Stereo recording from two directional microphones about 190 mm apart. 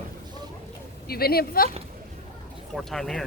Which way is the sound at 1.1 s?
55° left (ahead or behind).